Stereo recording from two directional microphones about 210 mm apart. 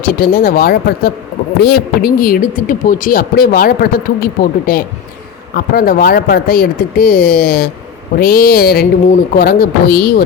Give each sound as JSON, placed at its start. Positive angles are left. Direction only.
{"t": 0.0, "sound": "speech", "side_deg": 45}